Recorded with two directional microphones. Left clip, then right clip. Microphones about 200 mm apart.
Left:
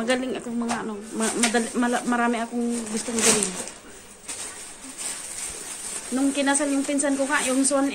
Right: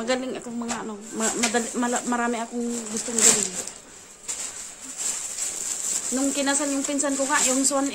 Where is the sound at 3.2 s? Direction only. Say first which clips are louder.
Even; 60° right (ahead or behind).